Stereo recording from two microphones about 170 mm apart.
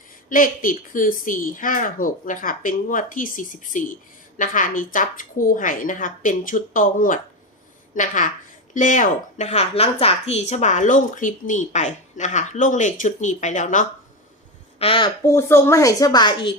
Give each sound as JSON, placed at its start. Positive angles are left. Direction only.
{"t": 0.3, "sound": "speech", "side_deg": 55}
{"t": 14.8, "sound": "speech", "side_deg": 30}
{"t": 15.2, "sound": "speech", "side_deg": 15}